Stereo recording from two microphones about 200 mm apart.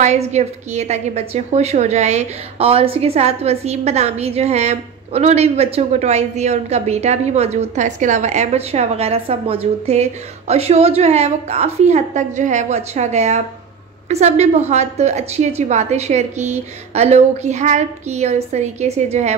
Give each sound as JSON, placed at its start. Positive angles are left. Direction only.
{"t": 0.0, "sound": "a woman's voice", "side_deg": -35}